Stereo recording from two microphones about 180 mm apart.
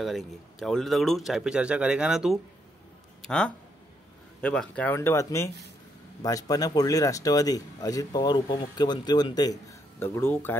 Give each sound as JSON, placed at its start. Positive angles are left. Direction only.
{"t": 0.0, "sound": "a man's voice", "side_deg": 0}